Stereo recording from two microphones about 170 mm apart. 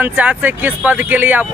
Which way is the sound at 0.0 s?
10° right (ahead or behind).